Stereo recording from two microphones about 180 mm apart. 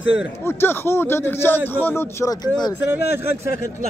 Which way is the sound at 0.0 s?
90° left.